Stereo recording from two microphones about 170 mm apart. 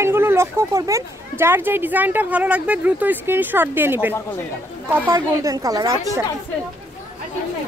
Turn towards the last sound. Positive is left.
turn(degrees=-20)  # may be behind; listen again after turning